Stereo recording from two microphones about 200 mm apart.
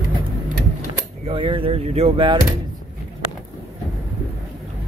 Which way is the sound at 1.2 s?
25° right (ahead or behind).